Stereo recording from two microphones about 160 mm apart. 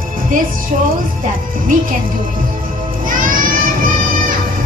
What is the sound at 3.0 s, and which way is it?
Music, 60° right (ahead or behind).